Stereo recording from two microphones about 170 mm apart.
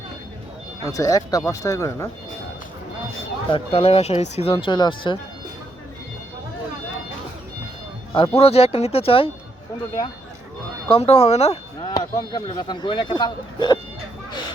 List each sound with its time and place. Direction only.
0.9 s speech: 20° left (ahead or behind)
3.5 s speech: 35° left (ahead or behind)
8.1 s speech: 30° left (ahead or behind)
10.8 s speech: 35° left (ahead or behind)
11.9 s speech: 25° left (ahead or behind)